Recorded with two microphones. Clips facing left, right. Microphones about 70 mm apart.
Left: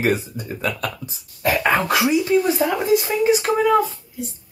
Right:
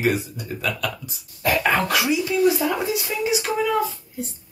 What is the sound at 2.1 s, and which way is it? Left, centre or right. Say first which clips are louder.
Speech: left 1 dB; left.